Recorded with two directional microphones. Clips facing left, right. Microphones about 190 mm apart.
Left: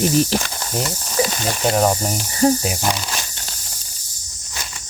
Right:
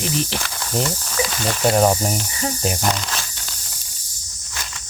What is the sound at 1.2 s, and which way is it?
Mechanisms, 40° left (ahead or behind).